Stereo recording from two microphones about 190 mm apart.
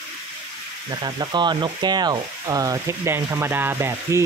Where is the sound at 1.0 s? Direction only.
20° right (ahead or behind).